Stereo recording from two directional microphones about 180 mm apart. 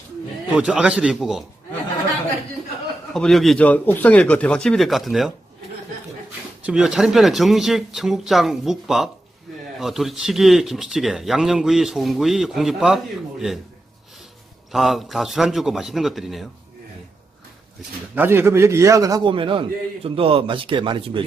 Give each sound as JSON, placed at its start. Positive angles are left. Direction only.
{"t": 0.5, "sound": "speech", "side_deg": -5}
{"t": 3.1, "sound": "speech", "side_deg": 5}
{"t": 6.7, "sound": "speech", "side_deg": -5}
{"t": 14.7, "sound": "speech", "side_deg": 0}
{"t": 18.1, "sound": "a man's voice", "side_deg": -10}